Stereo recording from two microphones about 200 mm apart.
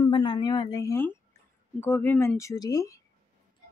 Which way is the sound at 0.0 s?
25° left (ahead or behind).